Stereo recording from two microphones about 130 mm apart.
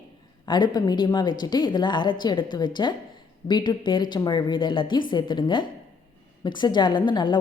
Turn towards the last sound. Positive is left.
turn(degrees=35)  # may be behind; listen again after turning